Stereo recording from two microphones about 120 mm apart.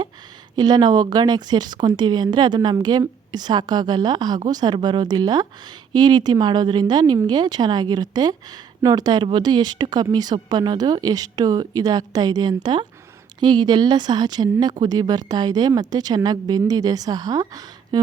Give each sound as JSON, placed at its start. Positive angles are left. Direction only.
{"t": 0.5, "sound": "speech", "side_deg": -35}